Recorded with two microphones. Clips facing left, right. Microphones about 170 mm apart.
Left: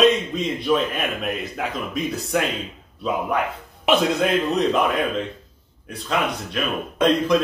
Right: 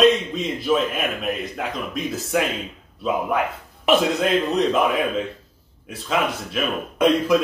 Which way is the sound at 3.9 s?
Centre (ahead or behind).